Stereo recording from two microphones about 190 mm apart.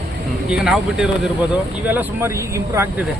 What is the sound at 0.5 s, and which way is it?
A man's voice, 5° right (ahead or behind).